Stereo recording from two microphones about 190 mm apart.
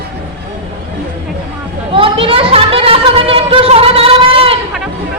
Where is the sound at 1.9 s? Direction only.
25° right (ahead or behind).